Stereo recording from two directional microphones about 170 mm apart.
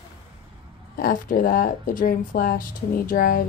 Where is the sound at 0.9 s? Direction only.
60° left (ahead or behind).